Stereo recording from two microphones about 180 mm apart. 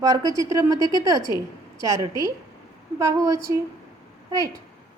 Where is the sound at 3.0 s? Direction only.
20° right (ahead or behind).